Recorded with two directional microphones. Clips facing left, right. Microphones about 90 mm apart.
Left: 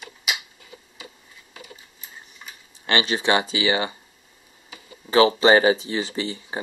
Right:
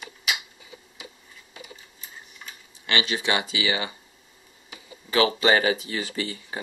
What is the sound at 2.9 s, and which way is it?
Speech, 35° left (ahead or behind).